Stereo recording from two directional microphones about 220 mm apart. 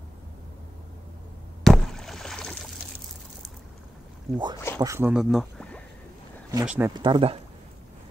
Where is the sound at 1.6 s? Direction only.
Centre (ahead or behind).